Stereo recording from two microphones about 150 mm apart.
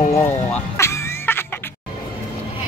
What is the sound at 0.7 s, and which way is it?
Music, 20° left (ahead or behind).